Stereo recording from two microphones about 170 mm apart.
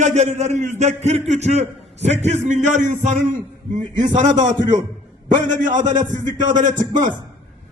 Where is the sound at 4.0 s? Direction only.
25° right (ahead or behind).